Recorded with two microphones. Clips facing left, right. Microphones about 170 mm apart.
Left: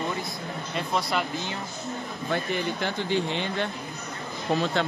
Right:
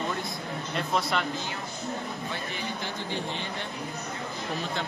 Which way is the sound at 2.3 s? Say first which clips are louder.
Left 7 dB; 70° left (ahead or behind).